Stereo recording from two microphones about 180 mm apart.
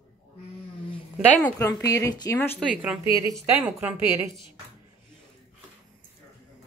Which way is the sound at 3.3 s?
10° right (ahead or behind).